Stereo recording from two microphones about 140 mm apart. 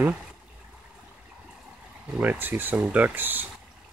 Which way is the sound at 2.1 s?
10° right (ahead or behind).